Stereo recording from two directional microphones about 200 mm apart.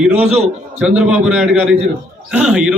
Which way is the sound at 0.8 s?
5° right (ahead or behind).